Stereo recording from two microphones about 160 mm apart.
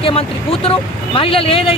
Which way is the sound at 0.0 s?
35° left (ahead or behind).